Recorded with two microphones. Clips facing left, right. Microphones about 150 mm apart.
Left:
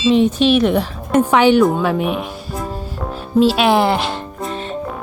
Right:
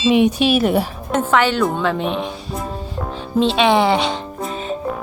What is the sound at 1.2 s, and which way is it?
Speech, 15° left (ahead or behind).